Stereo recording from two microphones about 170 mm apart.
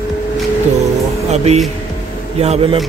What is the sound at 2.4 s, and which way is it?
Speech, 35° right (ahead or behind).